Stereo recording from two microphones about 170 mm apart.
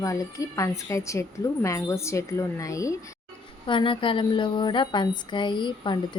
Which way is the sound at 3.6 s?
30° left (ahead or behind).